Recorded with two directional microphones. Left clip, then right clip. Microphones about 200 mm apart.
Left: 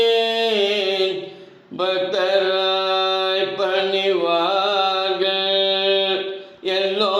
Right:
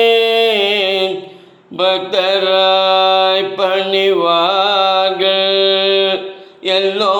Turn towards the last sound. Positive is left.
turn(degrees=-25)  # may be behind; listen again after turning